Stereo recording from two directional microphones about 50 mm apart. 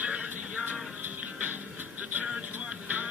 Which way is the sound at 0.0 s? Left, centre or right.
Right.